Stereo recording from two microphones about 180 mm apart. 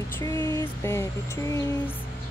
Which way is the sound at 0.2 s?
15° left (ahead or behind).